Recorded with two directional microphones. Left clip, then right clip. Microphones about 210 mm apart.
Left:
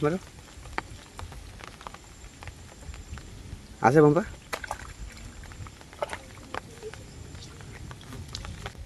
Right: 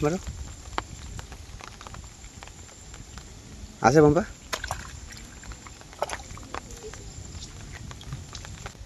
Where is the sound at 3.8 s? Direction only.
Centre (ahead or behind).